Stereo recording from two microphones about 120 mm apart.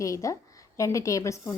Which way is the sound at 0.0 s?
25° left (ahead or behind).